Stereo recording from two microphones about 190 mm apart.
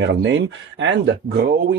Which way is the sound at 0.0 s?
70° right (ahead or behind).